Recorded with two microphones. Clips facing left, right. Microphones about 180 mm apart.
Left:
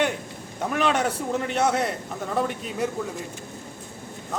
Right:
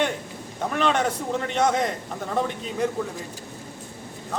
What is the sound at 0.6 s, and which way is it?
A man's voice, 10° left (ahead or behind).